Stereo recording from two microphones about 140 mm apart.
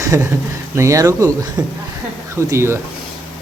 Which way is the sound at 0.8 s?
20° right (ahead or behind).